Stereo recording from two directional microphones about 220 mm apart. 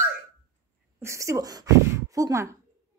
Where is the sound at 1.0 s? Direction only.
15° right (ahead or behind).